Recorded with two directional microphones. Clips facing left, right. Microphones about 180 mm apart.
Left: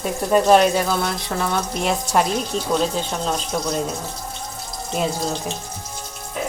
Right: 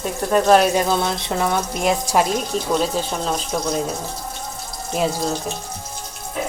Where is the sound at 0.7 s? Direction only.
20° right (ahead or behind).